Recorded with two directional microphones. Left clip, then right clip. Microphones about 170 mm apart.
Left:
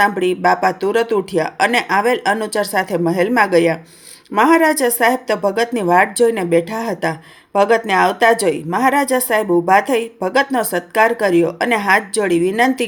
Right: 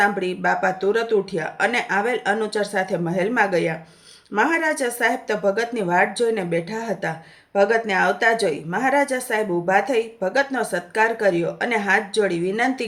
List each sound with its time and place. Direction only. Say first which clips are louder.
0.0 s speech: left 6 dB; 35° left (ahead or behind)